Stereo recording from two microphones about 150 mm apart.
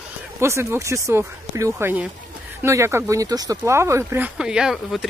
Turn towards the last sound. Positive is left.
turn(degrees=0)  # may be behind; listen again after turning